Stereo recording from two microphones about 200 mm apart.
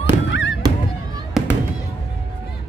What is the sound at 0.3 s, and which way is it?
Honk, 70° left (ahead or behind).